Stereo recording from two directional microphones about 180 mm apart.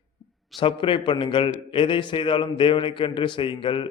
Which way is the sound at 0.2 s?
25° left (ahead or behind).